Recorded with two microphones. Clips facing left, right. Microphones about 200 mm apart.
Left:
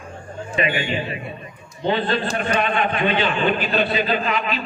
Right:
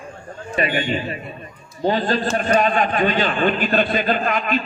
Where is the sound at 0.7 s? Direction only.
40° right (ahead or behind).